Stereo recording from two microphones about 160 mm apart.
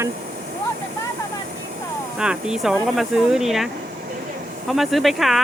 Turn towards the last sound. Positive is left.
turn(degrees=0)  # may be behind; listen again after turning